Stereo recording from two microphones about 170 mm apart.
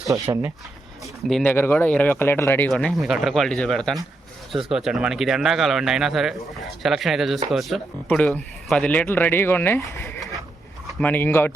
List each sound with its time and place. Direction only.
0.1 s speech: 15° right (ahead or behind)
1.3 s speech: centre (ahead or behind)
1.5 s speech: 10° left (ahead or behind)